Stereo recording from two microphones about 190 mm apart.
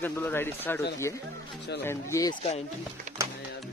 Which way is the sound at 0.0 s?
10° left (ahead or behind).